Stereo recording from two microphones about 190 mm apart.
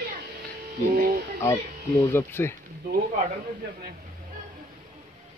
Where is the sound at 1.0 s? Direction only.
50° right (ahead or behind).